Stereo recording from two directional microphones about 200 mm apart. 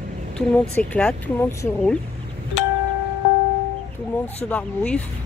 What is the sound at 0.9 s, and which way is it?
Speech, 10° left (ahead or behind).